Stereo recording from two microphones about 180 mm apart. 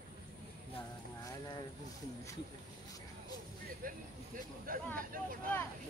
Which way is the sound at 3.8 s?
50° right (ahead or behind).